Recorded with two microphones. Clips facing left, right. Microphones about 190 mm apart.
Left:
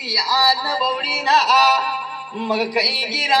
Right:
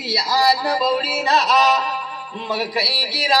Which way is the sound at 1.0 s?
Centre (ahead or behind).